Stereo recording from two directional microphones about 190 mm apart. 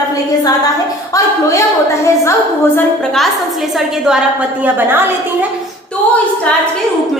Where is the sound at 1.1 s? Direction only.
15° left (ahead or behind).